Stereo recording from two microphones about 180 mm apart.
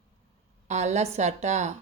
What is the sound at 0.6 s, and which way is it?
A woman's voice, 40° right (ahead or behind).